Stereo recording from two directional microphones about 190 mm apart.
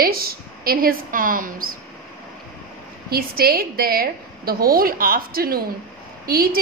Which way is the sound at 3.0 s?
55° right (ahead or behind).